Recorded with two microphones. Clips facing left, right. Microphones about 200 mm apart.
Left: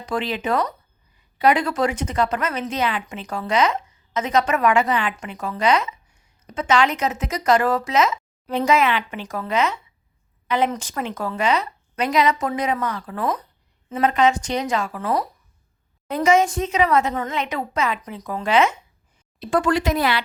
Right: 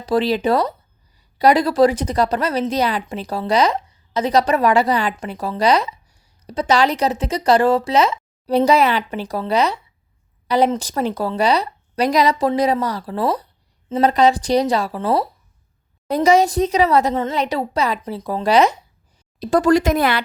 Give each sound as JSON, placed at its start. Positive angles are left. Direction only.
{"t": 0.0, "sound": "a woman's voice", "side_deg": -35}